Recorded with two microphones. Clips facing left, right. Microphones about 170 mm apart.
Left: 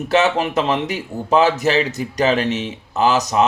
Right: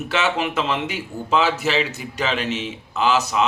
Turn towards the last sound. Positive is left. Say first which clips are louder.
# left 3 dB
turn(degrees=40)  # may be behind; listen again after turning